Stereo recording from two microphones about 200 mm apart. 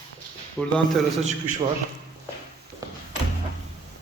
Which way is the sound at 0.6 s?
5° left (ahead or behind).